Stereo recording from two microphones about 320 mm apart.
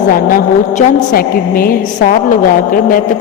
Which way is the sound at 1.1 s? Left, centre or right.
Left.